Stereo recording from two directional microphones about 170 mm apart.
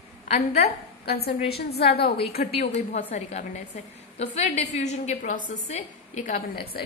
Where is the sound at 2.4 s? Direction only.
40° left (ahead or behind).